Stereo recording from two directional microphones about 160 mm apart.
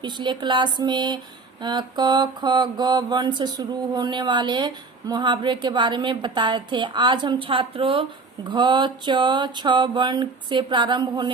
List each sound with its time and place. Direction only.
0.0 s mantra: 30° right (ahead or behind)